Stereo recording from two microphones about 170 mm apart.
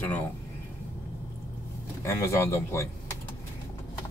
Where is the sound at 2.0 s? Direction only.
15° left (ahead or behind).